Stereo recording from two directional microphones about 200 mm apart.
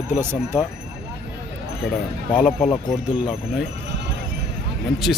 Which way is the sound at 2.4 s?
Centre (ahead or behind).